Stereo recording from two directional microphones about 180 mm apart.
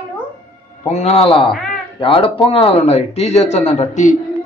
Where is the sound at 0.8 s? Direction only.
35° left (ahead or behind).